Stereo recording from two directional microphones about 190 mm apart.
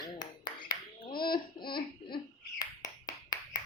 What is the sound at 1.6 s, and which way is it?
Laughter, 25° left (ahead or behind).